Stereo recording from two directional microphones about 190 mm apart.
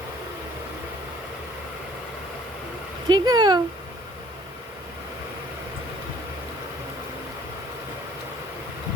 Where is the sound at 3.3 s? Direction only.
20° right (ahead or behind).